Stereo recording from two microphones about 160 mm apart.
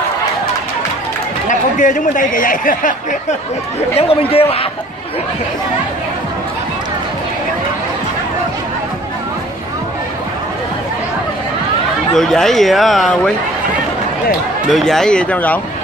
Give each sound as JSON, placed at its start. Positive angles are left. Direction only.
{"t": 1.5, "sound": "speech", "side_deg": 55}
{"t": 3.9, "sound": "a man's voice", "side_deg": 35}
{"t": 12.2, "sound": "speech", "side_deg": 0}
{"t": 14.7, "sound": "speech", "side_deg": 0}